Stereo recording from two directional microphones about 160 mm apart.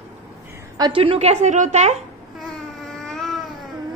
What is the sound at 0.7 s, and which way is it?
A woman's voice, 30° right (ahead or behind).